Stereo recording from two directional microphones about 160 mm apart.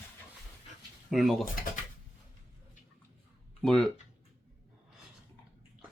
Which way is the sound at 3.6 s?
5° left (ahead or behind).